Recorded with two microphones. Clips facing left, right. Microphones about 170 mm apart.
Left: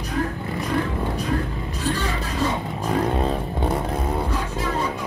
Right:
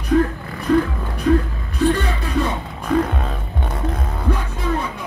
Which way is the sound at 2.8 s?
30° left (ahead or behind).